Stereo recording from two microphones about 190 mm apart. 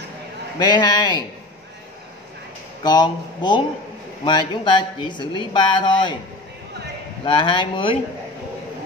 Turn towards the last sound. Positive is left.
turn(degrees=25)  # may be behind; listen again after turning